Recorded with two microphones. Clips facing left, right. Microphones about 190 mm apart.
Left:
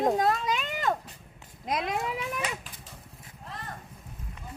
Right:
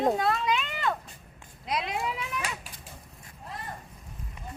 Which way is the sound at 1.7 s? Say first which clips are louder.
Left 1 dB; 50° left (ahead or behind).